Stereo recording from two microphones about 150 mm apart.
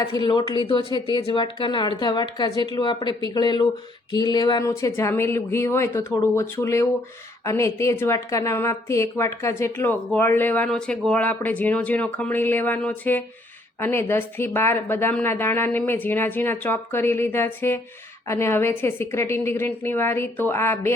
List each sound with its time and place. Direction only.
0.0 s a woman's voice: 25° left (ahead or behind)